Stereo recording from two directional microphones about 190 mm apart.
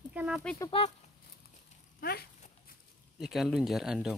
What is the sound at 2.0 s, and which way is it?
Speech, 55° left (ahead or behind).